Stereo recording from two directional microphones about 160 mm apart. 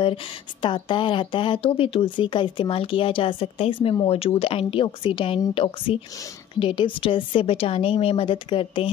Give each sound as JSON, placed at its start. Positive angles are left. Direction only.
{"t": 0.0, "sound": "a woman's voice", "side_deg": 30}